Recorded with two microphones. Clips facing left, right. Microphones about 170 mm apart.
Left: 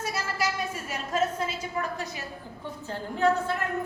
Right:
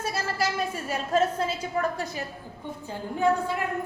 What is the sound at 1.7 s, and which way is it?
Speech, 40° right (ahead or behind).